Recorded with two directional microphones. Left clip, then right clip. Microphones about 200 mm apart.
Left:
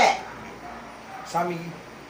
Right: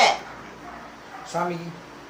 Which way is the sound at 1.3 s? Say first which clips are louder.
Left 1 dB; 25° left (ahead or behind).